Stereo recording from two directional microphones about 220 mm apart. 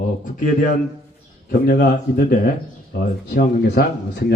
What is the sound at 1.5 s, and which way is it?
Speech, 40° left (ahead or behind).